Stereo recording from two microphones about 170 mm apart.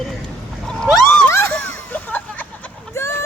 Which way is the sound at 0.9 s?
5° left (ahead or behind).